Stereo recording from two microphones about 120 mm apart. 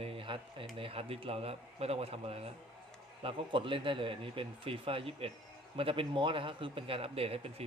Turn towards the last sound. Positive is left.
turn(degrees=-55)  # may be behind; listen again after turning